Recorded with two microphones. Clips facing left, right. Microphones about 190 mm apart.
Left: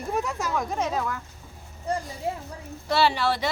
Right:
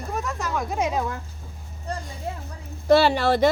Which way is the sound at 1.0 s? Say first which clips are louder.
Right 2 dB; 25° right (ahead or behind).